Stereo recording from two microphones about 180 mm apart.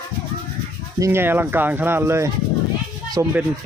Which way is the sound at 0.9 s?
15° right (ahead or behind).